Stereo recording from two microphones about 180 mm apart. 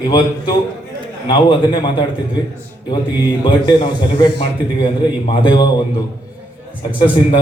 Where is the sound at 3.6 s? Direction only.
25° left (ahead or behind).